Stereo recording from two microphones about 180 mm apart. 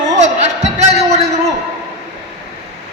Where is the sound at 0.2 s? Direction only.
40° right (ahead or behind).